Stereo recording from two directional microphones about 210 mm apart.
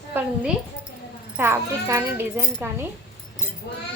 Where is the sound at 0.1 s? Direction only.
10° right (ahead or behind).